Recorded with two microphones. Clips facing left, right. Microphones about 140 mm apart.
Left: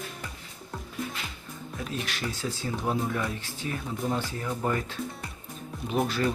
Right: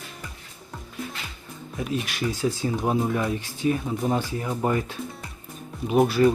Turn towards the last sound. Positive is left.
turn(degrees=-10)  # may be behind; listen again after turning